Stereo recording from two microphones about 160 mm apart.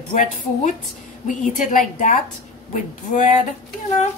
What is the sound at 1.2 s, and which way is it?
A woman's voice, 55° left (ahead or behind).